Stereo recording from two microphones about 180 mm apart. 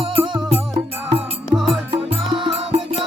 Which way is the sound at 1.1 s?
5° right (ahead or behind).